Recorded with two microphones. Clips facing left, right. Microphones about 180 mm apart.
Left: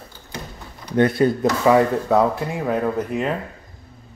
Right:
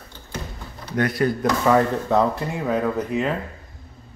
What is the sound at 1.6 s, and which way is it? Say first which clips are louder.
Speech: left 3 dB; 10° left (ahead or behind).